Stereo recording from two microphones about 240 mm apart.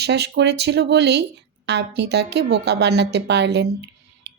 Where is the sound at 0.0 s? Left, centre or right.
Right.